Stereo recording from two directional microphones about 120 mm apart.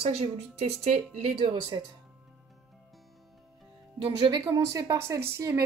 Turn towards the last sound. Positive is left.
turn(degrees=-25)  # may be behind; listen again after turning